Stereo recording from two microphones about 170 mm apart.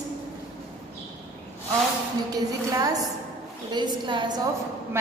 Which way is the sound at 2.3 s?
20° right (ahead or behind).